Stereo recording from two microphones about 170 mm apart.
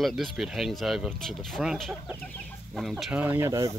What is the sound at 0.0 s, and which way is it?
Speech, centre (ahead or behind).